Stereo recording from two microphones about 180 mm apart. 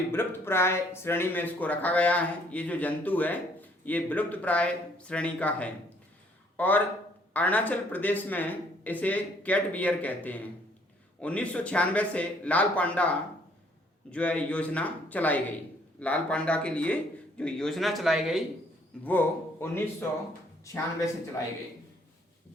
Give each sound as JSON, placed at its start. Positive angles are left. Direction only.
{"t": 0.1, "sound": "a man's voice", "side_deg": 10}
{"t": 19.0, "sound": "speech", "side_deg": 10}